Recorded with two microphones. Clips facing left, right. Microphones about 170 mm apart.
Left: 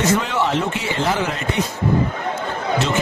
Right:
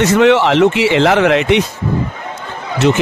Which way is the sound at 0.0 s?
80° right.